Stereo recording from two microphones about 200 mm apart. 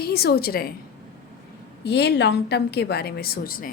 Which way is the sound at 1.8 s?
55° left (ahead or behind).